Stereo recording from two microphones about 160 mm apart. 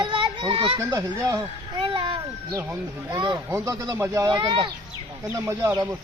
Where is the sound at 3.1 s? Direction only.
30° right (ahead or behind).